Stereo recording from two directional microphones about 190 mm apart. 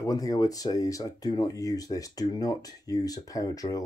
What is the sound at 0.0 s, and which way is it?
Speech, 20° left (ahead or behind).